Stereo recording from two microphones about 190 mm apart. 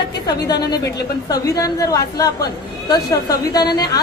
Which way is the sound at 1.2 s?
20° left (ahead or behind).